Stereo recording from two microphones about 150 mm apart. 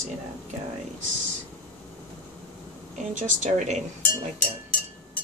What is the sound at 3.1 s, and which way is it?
Speech, 55° right (ahead or behind).